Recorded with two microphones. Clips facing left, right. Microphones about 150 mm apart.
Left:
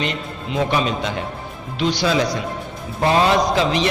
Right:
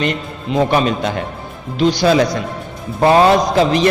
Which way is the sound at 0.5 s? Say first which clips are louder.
Right 5 dB; 50° right (ahead or behind).